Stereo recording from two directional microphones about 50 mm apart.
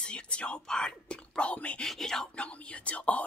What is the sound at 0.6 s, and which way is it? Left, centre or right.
Speech, centre.